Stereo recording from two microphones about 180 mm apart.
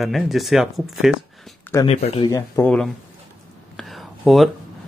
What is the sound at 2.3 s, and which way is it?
Speech, 15° left (ahead or behind).